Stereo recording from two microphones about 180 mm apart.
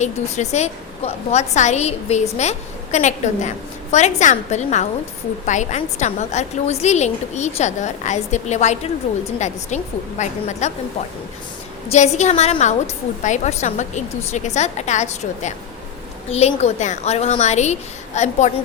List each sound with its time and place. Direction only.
0.0 s a woman's voice: 40° left (ahead or behind)
11.9 s a woman's voice: 40° left (ahead or behind)